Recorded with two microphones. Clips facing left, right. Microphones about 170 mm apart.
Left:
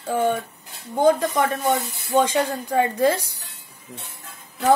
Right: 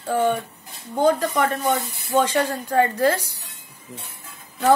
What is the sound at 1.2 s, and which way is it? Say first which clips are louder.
A woman's voice: even; 15° left (ahead or behind).